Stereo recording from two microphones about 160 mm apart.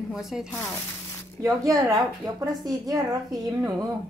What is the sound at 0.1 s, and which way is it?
Speech, centre (ahead or behind).